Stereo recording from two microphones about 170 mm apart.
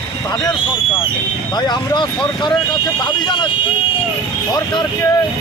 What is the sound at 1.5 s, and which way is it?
Speech, 25° left (ahead or behind).